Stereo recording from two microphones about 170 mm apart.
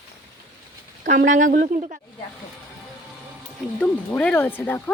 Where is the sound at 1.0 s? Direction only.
50° right (ahead or behind).